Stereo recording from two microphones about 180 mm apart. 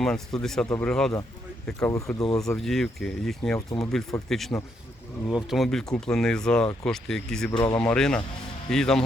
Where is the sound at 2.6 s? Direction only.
5° left (ahead or behind).